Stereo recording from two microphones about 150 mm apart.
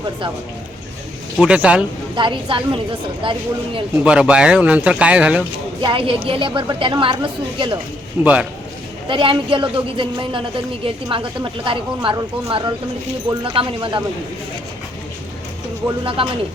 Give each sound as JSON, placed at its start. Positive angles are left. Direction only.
{"t": 1.4, "sound": "speech", "side_deg": -5}
{"t": 2.1, "sound": "a woman's voice", "side_deg": -30}
{"t": 3.9, "sound": "speech", "side_deg": -5}
{"t": 5.8, "sound": "a woman's voice", "side_deg": -35}
{"t": 8.2, "sound": "speech", "side_deg": -10}
{"t": 9.0, "sound": "a woman's voice", "side_deg": -35}
{"t": 16.0, "sound": "a woman's voice", "side_deg": -35}